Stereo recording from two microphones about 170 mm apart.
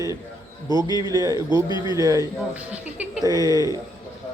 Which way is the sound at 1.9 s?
20° right (ahead or behind).